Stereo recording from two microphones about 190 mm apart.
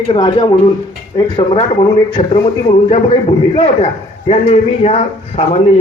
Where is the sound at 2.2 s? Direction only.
35° left (ahead or behind).